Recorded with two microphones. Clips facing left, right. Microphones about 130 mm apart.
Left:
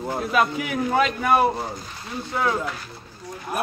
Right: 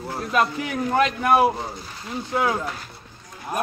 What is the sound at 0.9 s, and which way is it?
Speech, centre (ahead or behind).